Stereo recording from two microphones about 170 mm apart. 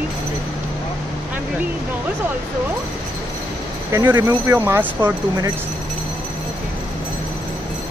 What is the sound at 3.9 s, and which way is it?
Speech, 20° right (ahead or behind).